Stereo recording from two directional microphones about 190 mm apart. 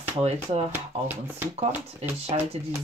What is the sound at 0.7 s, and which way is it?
Speech, 10° right (ahead or behind).